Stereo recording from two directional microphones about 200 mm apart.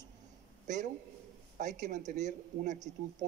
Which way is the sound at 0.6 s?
40° right (ahead or behind).